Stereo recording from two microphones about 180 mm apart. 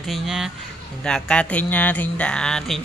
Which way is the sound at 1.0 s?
5° left (ahead or behind).